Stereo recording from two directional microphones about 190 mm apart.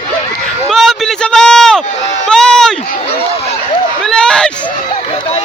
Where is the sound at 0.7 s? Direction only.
Centre (ahead or behind).